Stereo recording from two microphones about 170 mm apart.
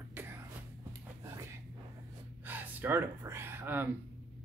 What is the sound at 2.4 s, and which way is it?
Gasp, 10° right (ahead or behind).